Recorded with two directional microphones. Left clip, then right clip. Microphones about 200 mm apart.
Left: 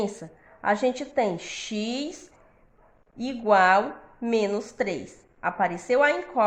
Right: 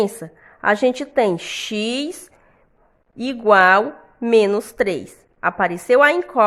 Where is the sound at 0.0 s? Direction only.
45° right (ahead or behind).